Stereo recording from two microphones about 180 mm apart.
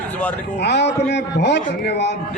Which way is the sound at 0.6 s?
70° left (ahead or behind).